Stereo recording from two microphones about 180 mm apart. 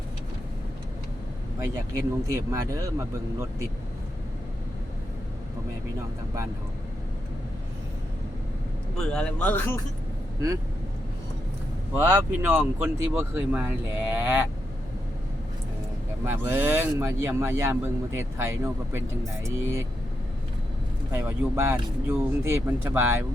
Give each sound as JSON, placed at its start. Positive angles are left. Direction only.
{"t": 1.6, "sound": "speech", "side_deg": -15}
{"t": 9.0, "sound": "a man's voice", "side_deg": 5}
{"t": 11.9, "sound": "speech", "side_deg": -10}
{"t": 16.3, "sound": "speech", "side_deg": -10}
{"t": 21.1, "sound": "speech", "side_deg": -15}